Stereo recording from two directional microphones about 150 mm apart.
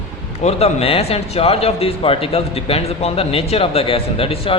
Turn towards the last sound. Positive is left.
turn(degrees=40)  # may be behind; listen again after turning